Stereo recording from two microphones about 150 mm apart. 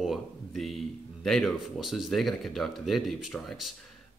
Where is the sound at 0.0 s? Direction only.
Centre (ahead or behind).